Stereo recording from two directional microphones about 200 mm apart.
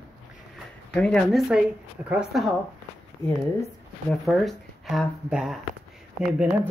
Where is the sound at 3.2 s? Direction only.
10° left (ahead or behind).